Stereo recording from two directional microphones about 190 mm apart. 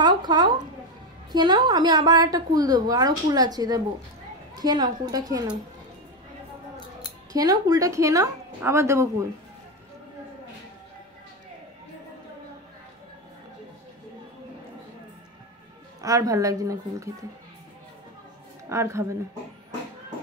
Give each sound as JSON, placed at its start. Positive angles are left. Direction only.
{"t": 0.0, "sound": "a sound", "side_deg": -25}
{"t": 1.3, "sound": "a woman's voice", "side_deg": -20}
{"t": 7.3, "sound": "a woman's voice", "side_deg": -20}
{"t": 16.0, "sound": "a woman's voice", "side_deg": -15}
{"t": 18.7, "sound": "a woman's voice", "side_deg": -15}